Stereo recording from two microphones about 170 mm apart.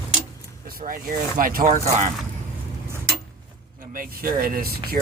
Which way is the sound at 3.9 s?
55° right (ahead or behind).